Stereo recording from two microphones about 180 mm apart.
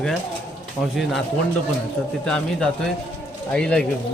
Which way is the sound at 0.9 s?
Centre (ahead or behind).